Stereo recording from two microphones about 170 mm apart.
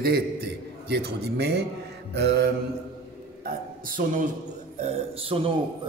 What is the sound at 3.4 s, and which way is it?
Speech, 55° right (ahead or behind).